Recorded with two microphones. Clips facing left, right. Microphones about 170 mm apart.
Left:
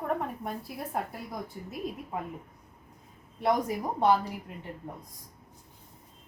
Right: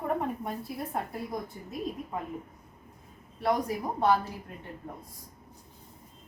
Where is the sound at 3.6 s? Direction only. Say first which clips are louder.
Left 1 dB; 15° left (ahead or behind).